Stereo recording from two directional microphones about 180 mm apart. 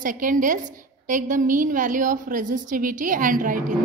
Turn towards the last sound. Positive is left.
turn(degrees=-50)  # may be behind; listen again after turning